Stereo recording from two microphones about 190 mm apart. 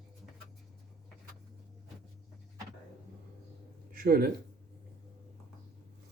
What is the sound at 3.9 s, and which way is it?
Speech, 50° right (ahead or behind).